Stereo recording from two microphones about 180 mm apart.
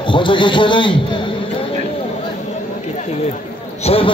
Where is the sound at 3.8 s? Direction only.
35° left (ahead or behind).